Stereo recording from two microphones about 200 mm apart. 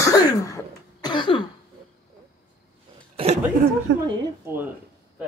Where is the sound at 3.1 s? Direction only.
30° right (ahead or behind).